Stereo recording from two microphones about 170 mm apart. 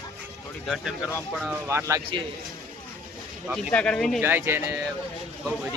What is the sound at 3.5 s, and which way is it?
Speech, 5° left (ahead or behind).